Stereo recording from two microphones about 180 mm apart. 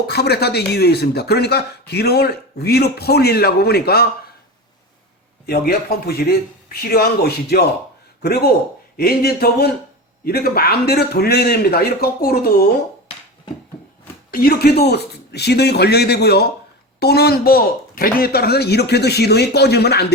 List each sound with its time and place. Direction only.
0.1 s speech: 65° left (ahead or behind)
5.5 s speech: 60° left (ahead or behind)
9.0 s speech: 60° left (ahead or behind)
14.3 s speech: 55° left (ahead or behind)